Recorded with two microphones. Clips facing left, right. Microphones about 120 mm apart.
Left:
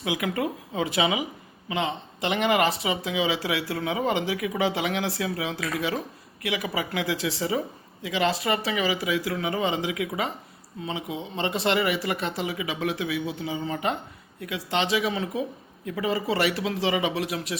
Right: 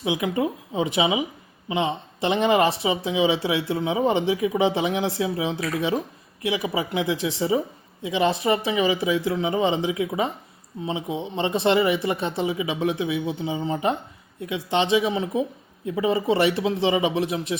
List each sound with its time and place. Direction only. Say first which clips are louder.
0.0 s speech: right 3 dB; 20° right (ahead or behind)